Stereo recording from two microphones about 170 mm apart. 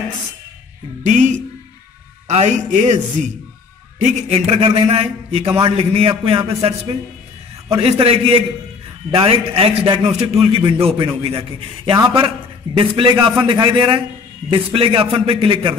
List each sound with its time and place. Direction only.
1.0 s a man's voice: 45° right (ahead or behind)
4.0 s a man's voice: 35° right (ahead or behind)